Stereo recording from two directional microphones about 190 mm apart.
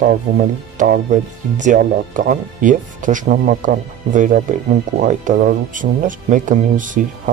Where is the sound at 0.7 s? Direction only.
50° right (ahead or behind).